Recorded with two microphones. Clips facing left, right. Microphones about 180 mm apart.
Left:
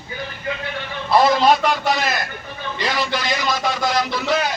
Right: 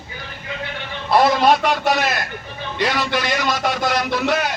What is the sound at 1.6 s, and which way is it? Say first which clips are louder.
A man's voice: right 1 dB; 65° right (ahead or behind).